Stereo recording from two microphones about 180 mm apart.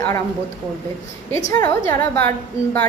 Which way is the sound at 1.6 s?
15° left (ahead or behind).